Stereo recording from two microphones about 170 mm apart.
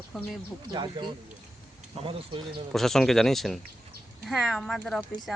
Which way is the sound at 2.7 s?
Centre (ahead or behind).